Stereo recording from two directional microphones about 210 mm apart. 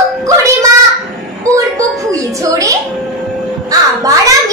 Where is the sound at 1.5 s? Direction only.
15° right (ahead or behind).